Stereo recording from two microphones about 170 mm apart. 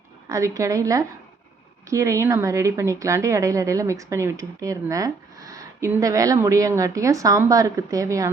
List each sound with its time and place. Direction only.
0.3 s a woman's voice: 20° right (ahead or behind)